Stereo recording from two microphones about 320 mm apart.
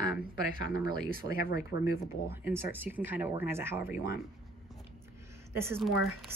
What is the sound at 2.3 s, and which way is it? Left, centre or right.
Speech, centre.